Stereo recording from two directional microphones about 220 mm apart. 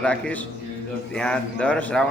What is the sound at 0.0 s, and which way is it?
Speech, 5° left (ahead or behind).